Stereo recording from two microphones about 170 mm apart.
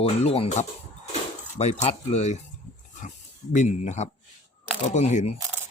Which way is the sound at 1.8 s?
40° left (ahead or behind).